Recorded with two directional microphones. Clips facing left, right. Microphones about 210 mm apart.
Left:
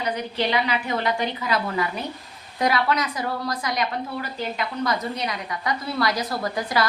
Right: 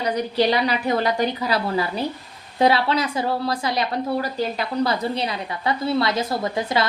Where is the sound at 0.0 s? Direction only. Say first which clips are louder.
Right 5 dB; 35° right (ahead or behind).